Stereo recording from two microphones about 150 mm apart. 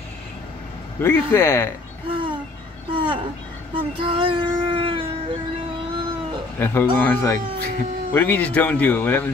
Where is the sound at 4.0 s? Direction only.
35° right (ahead or behind).